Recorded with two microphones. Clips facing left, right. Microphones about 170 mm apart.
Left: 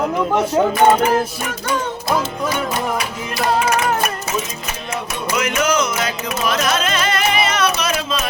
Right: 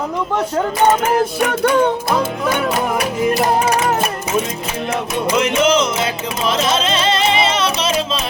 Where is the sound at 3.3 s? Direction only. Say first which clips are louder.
Right 2 dB; 25° right (ahead or behind).